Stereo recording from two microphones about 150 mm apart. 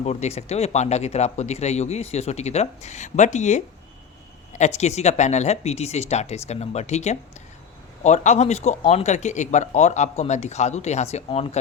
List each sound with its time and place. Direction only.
0.0 s speech: 45° left (ahead or behind)